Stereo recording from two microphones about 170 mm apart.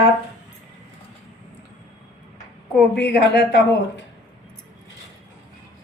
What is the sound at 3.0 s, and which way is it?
Speech, 80° left.